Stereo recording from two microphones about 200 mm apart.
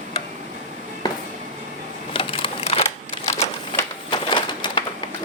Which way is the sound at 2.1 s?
25° left (ahead or behind).